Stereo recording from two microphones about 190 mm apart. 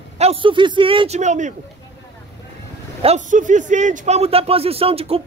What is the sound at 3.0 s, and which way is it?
A man's voice, 35° right (ahead or behind).